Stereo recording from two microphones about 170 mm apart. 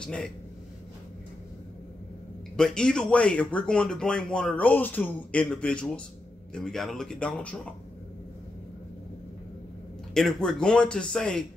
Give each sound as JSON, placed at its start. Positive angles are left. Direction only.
{"t": 0.0, "sound": "speech", "side_deg": 5}
{"t": 2.5, "sound": "speech", "side_deg": 5}
{"t": 10.1, "sound": "speech", "side_deg": 0}